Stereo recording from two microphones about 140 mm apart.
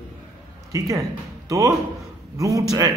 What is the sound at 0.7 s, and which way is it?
Speech, 20° right (ahead or behind).